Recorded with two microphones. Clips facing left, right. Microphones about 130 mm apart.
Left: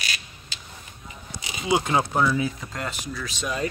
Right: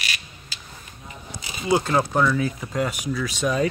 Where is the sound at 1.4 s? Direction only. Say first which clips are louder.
Right 2 dB; 15° left (ahead or behind).